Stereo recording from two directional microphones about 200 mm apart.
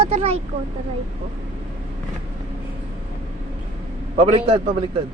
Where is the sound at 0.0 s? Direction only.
30° right (ahead or behind).